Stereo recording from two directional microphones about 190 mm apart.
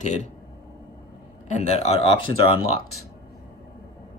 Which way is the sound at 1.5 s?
35° left (ahead or behind).